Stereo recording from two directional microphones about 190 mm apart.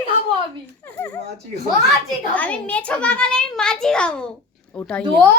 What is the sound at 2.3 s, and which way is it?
A child's voice, 5° left (ahead or behind).